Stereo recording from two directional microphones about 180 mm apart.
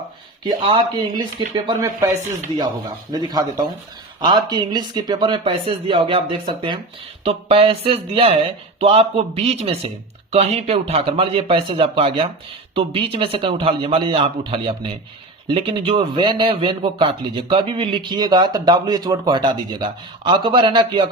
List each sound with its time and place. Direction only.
0.4 s a man's voice: 25° right (ahead or behind)
3.1 s a man's voice: 20° right (ahead or behind)